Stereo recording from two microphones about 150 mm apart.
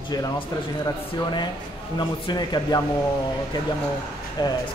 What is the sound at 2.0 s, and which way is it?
Speech, 30° left (ahead or behind).